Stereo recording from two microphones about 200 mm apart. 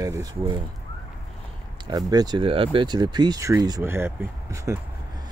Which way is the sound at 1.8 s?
20° right (ahead or behind).